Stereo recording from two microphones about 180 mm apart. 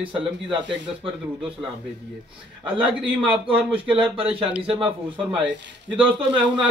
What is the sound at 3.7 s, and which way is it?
A man's voice, 30° right (ahead or behind).